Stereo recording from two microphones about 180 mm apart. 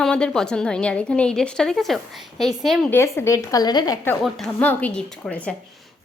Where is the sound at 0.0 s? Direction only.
5° left (ahead or behind).